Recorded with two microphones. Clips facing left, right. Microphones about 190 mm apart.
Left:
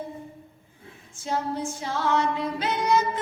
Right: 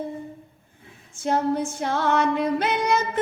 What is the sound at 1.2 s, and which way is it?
Female singing, 60° right (ahead or behind).